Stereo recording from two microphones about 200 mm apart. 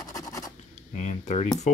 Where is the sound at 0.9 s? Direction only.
35° left (ahead or behind).